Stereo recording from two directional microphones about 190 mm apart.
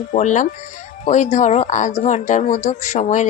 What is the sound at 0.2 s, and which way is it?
Speech, 40° left (ahead or behind).